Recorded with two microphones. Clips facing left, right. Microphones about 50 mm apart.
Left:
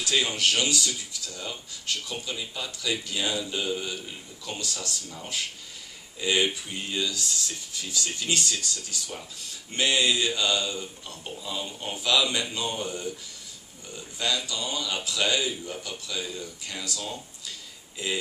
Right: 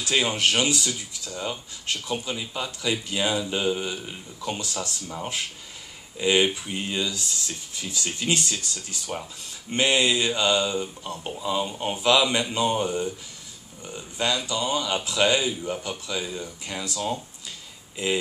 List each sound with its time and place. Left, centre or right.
0.0 s a man's voice: right